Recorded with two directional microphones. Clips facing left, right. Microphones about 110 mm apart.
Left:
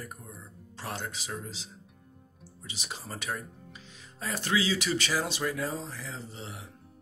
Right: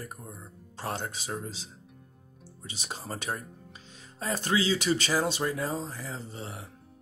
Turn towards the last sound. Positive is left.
turn(degrees=-40)  # may be behind; listen again after turning